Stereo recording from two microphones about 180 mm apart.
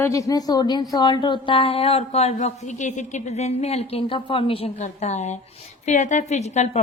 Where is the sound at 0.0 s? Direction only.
20° left (ahead or behind).